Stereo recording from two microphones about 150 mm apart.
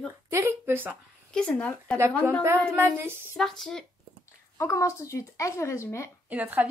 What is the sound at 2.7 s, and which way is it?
Speech, 15° right (ahead or behind).